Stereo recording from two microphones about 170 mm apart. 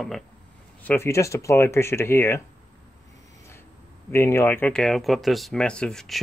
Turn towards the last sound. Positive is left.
turn(degrees=0)  # may be behind; listen again after turning